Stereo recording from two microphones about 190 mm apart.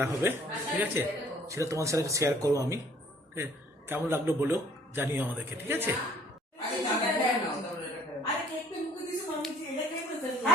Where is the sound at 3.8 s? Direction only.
10° right (ahead or behind).